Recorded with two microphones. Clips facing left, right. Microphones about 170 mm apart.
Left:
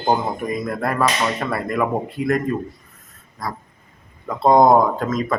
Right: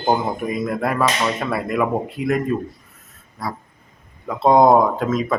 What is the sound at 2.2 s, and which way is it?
Speech, 40° left (ahead or behind).